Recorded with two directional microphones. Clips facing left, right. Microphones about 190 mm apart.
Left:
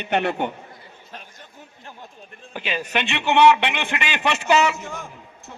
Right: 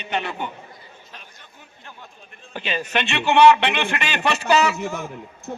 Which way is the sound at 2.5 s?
10° left (ahead or behind).